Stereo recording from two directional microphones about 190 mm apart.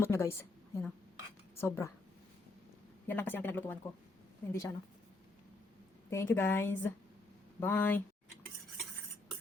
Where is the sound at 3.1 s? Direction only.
10° left (ahead or behind).